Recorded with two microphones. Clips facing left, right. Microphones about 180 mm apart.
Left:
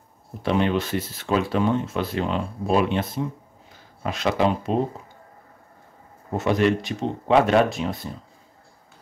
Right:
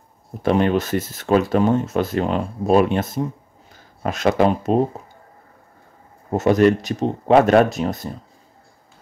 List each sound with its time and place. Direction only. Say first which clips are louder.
0.4 s speech: right 4 dB; 45° right (ahead or behind)
6.3 s speech: right 5 dB; 40° right (ahead or behind)